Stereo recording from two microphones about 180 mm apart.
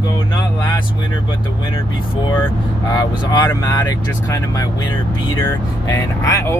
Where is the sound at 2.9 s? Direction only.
20° left (ahead or behind).